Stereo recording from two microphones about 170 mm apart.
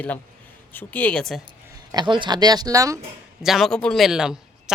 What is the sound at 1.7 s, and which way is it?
Speech, 25° right (ahead or behind).